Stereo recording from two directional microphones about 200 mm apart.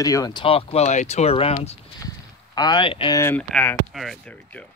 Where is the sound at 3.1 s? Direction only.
10° left (ahead or behind).